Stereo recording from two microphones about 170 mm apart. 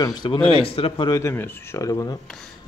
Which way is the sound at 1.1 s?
15° left (ahead or behind).